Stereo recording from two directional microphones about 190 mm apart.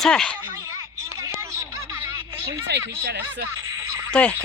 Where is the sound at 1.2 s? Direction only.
15° right (ahead or behind).